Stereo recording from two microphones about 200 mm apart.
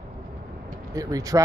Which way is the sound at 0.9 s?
15° right (ahead or behind).